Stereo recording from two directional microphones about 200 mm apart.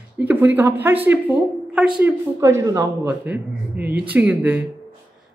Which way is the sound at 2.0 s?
15° right (ahead or behind).